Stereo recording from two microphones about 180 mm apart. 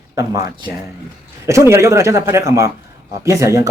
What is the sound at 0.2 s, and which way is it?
Speech, 20° right (ahead or behind).